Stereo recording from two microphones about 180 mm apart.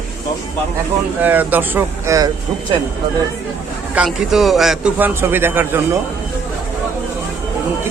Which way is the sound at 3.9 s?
5° right (ahead or behind).